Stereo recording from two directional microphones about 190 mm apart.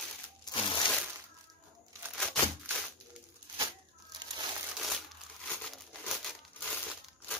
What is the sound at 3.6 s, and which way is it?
Crumpling, 25° right (ahead or behind).